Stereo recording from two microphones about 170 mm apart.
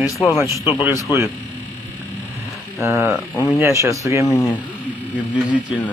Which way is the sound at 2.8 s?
15° right (ahead or behind).